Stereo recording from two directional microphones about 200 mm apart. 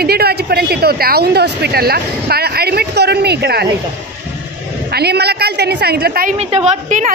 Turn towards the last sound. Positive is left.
turn(degrees=-35)  # may be behind; listen again after turning